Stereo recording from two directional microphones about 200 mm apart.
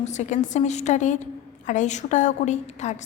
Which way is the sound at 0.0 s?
35° left (ahead or behind).